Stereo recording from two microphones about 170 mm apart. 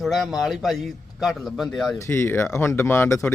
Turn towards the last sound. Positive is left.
turn(degrees=15)  # may be behind; listen again after turning